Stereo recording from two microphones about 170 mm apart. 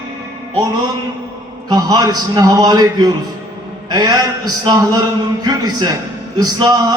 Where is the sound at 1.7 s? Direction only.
25° right (ahead or behind).